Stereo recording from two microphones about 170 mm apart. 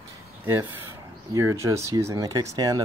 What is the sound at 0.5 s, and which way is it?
Speech, 15° right (ahead or behind).